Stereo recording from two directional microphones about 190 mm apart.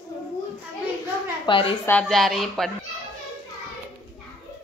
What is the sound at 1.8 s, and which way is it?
Speech, 5° left (ahead or behind).